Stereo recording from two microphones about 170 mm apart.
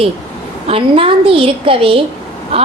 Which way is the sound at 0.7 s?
30° right (ahead or behind).